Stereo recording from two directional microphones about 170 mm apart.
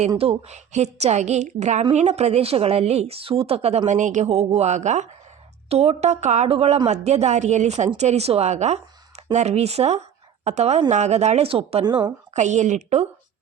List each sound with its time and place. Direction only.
0.2 s speech: 40° right (ahead or behind)
12.3 s a woman's voice: 45° right (ahead or behind)